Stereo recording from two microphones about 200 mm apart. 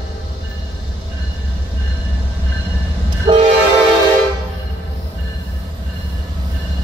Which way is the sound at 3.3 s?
25° right (ahead or behind).